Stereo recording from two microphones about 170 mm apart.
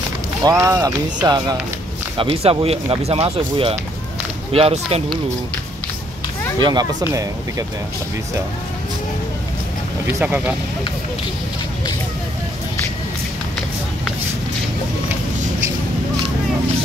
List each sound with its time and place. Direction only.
0.4 s speech: 20° right (ahead or behind)
2.1 s speech: 35° right (ahead or behind)
6.6 s speech: 25° right (ahead or behind)
10.0 s speech: 10° right (ahead or behind)